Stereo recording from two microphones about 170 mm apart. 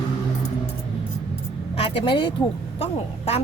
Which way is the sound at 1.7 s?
30° left (ahead or behind).